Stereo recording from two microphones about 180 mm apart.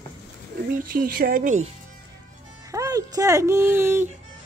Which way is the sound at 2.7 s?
20° right (ahead or behind).